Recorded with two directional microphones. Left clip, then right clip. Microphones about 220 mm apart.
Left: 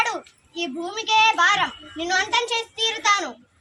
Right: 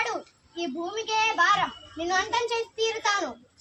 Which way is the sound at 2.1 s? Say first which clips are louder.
Left 4 dB; centre (ahead or behind).